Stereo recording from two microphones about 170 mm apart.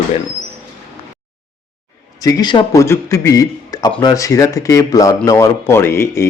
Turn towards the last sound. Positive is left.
turn(degrees=15)  # may be behind; listen again after turning